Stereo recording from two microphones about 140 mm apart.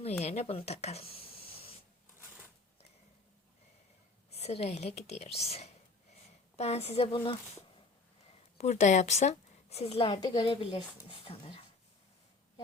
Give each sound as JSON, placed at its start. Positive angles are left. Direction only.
{"t": 0.0, "sound": "speech", "side_deg": 50}
{"t": 4.3, "sound": "speech", "side_deg": 50}
{"t": 8.5, "sound": "a woman's voice", "side_deg": 55}